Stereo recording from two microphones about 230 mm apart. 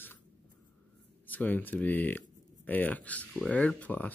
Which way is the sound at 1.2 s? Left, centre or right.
Centre.